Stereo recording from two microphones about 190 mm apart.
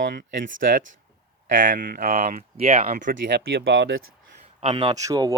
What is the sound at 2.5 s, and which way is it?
Speech, 30° right (ahead or behind).